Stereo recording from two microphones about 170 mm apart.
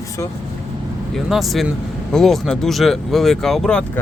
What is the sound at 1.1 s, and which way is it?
Speech, centre (ahead or behind).